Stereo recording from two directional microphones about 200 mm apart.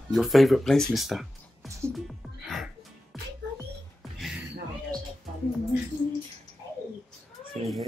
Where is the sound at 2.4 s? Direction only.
Centre (ahead or behind).